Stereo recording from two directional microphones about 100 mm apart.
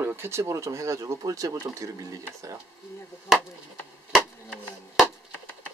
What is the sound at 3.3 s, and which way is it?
Chop, 5° right (ahead or behind).